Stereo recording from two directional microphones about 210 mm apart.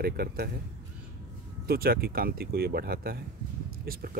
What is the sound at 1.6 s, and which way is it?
Speech, 45° right (ahead or behind).